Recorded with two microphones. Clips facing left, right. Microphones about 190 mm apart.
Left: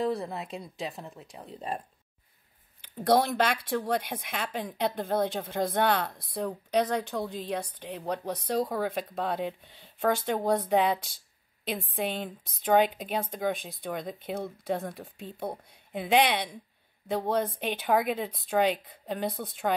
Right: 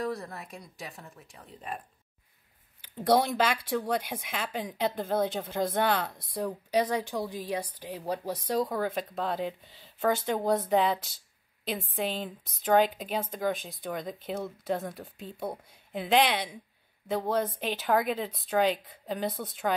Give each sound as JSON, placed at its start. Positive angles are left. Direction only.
{"t": 0.0, "sound": "speech", "side_deg": 30}
{"t": 3.0, "sound": "a woman's voice", "side_deg": -10}